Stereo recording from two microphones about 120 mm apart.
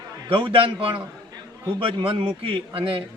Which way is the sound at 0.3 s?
45° right (ahead or behind).